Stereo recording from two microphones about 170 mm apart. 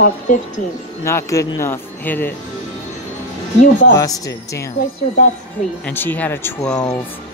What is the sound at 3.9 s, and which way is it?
Speech, 20° left (ahead or behind).